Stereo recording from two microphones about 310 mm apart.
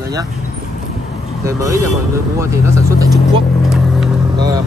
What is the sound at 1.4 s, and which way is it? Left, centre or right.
Speech, centre.